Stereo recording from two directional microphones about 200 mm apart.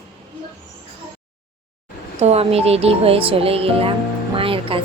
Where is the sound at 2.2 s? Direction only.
30° right (ahead or behind).